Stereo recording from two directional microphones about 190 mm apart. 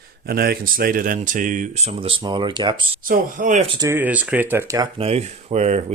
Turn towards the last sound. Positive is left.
turn(degrees=-35)  # may be behind; listen again after turning